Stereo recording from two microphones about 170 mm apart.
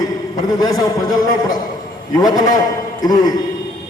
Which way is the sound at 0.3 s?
20° left (ahead or behind).